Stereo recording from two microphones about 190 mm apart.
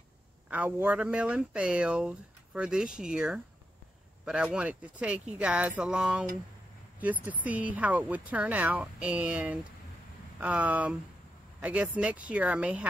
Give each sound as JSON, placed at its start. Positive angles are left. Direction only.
{"t": 0.5, "sound": "speech", "side_deg": -10}